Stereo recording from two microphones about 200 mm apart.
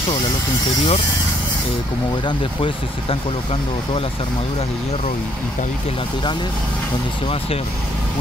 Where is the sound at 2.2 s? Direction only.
25° left (ahead or behind).